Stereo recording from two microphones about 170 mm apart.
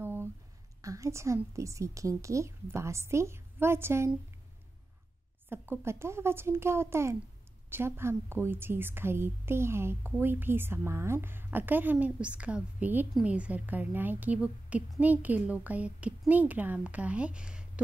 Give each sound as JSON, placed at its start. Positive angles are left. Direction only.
{"t": 0.0, "sound": "a sound", "side_deg": -15}
{"t": 0.8, "sound": "a woman's voice", "side_deg": -20}
{"t": 5.5, "sound": "a woman's voice", "side_deg": -15}